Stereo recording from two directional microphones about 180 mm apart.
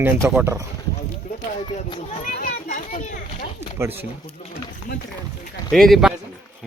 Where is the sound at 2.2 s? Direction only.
45° left (ahead or behind).